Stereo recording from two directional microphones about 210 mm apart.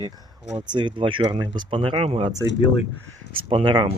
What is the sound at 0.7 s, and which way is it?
Speech, 20° right (ahead or behind).